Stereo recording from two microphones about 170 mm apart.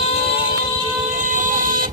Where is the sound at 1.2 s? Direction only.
50° right (ahead or behind).